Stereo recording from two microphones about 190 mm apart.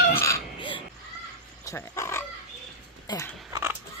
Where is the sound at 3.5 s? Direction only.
15° right (ahead or behind).